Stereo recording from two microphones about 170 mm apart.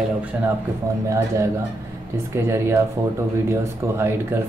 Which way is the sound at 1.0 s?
15° right (ahead or behind).